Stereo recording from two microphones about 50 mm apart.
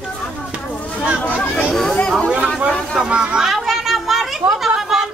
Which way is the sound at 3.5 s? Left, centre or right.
Centre.